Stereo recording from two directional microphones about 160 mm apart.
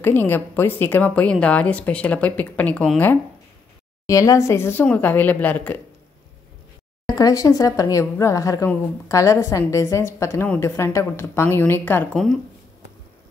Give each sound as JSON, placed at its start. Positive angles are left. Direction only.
{"t": 0.0, "sound": "speech", "side_deg": 15}
{"t": 4.0, "sound": "speech", "side_deg": 20}
{"t": 7.1, "sound": "speech", "side_deg": 20}